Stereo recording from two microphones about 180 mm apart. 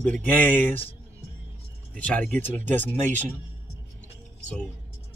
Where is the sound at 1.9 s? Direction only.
5° left (ahead or behind).